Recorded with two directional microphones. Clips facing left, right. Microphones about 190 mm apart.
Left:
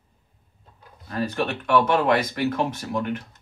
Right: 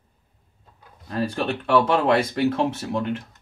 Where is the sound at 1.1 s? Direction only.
30° right (ahead or behind).